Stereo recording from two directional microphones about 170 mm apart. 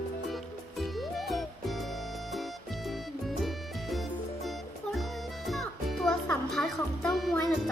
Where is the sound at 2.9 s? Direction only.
Centre (ahead or behind).